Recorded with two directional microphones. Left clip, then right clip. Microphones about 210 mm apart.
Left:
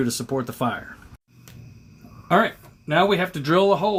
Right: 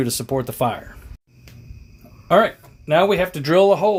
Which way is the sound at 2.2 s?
40° right (ahead or behind).